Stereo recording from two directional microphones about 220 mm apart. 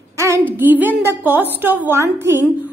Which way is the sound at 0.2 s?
10° right (ahead or behind).